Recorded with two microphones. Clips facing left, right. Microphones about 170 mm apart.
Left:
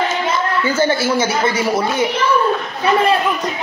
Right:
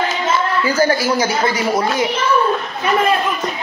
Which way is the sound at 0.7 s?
25° left (ahead or behind).